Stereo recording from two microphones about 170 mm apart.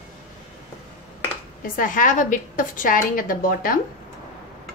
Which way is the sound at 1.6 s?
50° left (ahead or behind).